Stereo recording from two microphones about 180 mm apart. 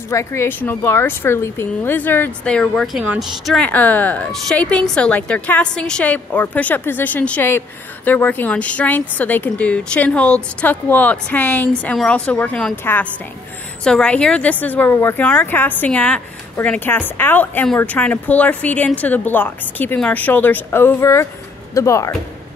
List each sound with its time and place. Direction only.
0.1 s speech: 15° left (ahead or behind)